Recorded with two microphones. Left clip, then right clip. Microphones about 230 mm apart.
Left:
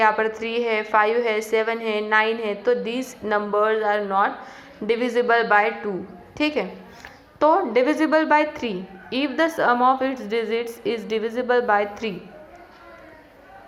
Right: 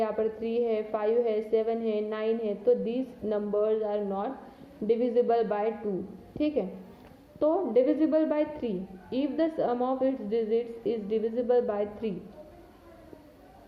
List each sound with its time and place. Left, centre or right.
0.0 s a woman's voice: centre